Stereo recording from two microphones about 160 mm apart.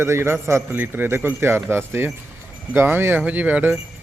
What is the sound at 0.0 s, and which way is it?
A man's voice, 15° right (ahead or behind).